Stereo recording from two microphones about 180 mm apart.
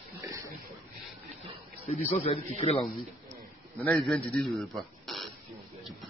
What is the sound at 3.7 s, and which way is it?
A man's voice, 5° left (ahead or behind).